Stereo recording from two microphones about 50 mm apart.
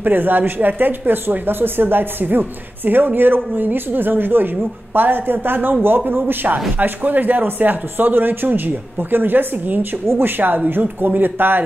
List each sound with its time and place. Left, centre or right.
0.0 s speech: right